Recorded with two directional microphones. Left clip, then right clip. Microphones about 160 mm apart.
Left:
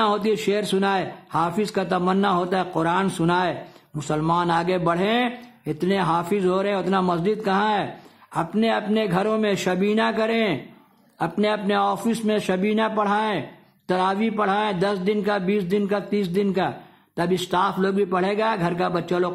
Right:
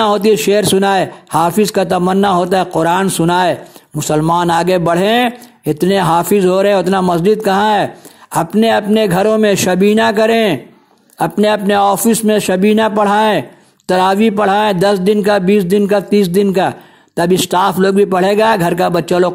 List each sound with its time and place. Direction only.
0.0 s a man's voice: 35° right (ahead or behind)